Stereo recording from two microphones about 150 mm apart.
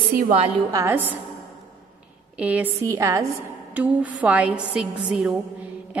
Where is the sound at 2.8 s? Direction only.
20° right (ahead or behind).